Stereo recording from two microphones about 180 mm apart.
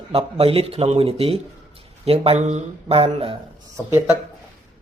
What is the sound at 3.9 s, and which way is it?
Speech, 15° right (ahead or behind).